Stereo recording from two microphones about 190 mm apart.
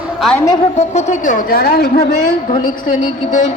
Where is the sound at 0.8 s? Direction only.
40° left (ahead or behind); by 2.0 s 55° left (ahead or behind).